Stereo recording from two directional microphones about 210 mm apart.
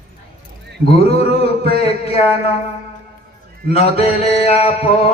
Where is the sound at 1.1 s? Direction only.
30° left (ahead or behind).